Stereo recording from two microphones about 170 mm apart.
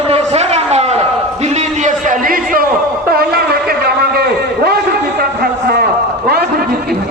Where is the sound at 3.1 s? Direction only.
65° right (ahead or behind).